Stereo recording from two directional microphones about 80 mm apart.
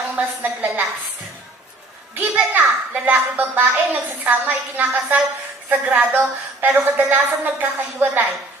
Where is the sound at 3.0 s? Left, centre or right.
Right.